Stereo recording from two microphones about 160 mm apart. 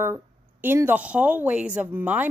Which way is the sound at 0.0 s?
15° right (ahead or behind).